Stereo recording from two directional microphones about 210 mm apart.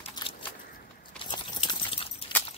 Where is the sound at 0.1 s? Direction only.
25° left (ahead or behind).